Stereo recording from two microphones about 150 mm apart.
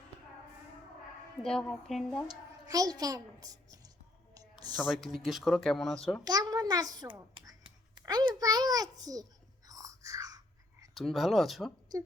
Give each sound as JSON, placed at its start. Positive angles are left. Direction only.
{"t": 1.4, "sound": "speech", "side_deg": 5}
{"t": 2.6, "sound": "a child's voice", "side_deg": -25}
{"t": 4.9, "sound": "speech", "side_deg": 0}
{"t": 6.2, "sound": "a child's voice", "side_deg": -25}
{"t": 9.6, "sound": "whispering", "side_deg": -25}
{"t": 10.9, "sound": "speech", "side_deg": 0}